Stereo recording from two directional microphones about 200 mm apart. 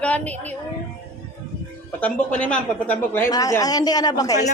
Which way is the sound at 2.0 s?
5° left (ahead or behind).